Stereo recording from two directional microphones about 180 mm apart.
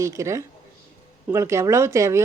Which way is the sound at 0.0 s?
15° right (ahead or behind).